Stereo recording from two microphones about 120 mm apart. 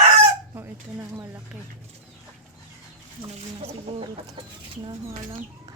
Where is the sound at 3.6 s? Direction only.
60° right (ahead or behind).